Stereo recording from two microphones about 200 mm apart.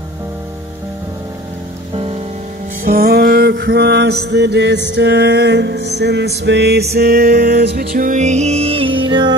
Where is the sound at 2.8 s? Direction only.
45° right (ahead or behind).